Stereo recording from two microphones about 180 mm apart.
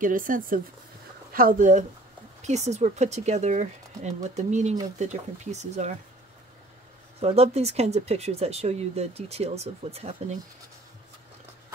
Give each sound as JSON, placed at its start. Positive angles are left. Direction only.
{"t": 0.0, "sound": "speech", "side_deg": -50}
{"t": 7.2, "sound": "speech", "side_deg": -35}